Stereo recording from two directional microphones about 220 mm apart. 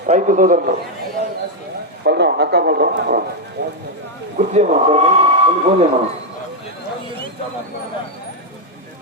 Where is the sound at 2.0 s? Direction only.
50° right (ahead or behind).